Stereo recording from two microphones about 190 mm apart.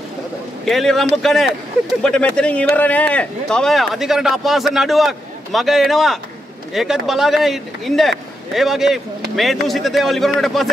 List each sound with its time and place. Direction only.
0.7 s speech: centre (ahead or behind)